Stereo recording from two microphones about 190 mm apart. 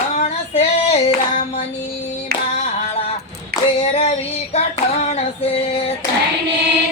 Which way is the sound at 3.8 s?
30° left (ahead or behind).